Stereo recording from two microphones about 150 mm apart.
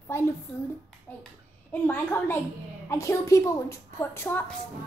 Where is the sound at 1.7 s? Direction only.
15° left (ahead or behind).